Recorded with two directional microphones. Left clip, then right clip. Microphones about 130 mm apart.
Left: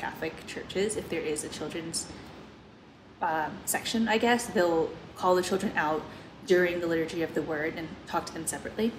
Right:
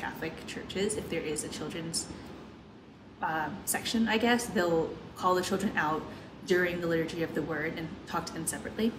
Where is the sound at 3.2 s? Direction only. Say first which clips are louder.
Left 3 dB; 15° right (ahead or behind).